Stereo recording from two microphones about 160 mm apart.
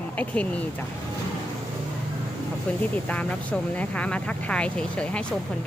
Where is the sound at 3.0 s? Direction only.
10° left (ahead or behind).